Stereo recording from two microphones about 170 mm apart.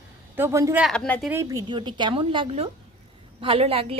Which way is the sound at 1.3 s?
15° right (ahead or behind).